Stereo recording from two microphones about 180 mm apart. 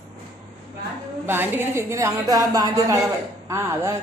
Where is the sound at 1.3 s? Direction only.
10° right (ahead or behind).